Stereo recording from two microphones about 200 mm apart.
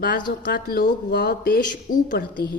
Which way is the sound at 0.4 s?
50° left (ahead or behind).